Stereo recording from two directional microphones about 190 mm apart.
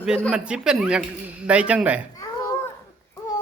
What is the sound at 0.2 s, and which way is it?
Speech, 5° right (ahead or behind).